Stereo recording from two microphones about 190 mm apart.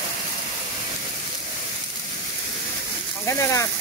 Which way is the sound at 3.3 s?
15° left (ahead or behind).